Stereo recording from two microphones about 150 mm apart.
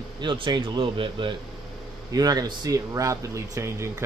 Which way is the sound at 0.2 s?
30° right (ahead or behind).